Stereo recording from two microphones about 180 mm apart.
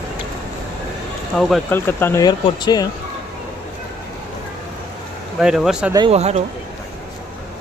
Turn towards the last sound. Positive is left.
turn(degrees=-35)  # may be behind; listen again after turning